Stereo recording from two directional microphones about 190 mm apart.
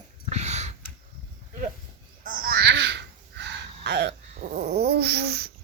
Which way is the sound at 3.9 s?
65° right (ahead or behind).